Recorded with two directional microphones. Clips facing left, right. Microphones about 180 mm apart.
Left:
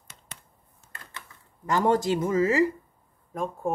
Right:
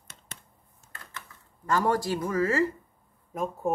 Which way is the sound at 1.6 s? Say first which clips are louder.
Left 3 dB; 20° left (ahead or behind).